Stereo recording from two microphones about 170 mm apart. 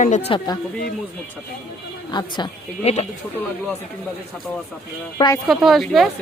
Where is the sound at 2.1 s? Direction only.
25° left (ahead or behind).